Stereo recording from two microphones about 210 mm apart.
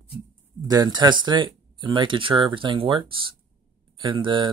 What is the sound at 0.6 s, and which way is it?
Speech, 20° right (ahead or behind).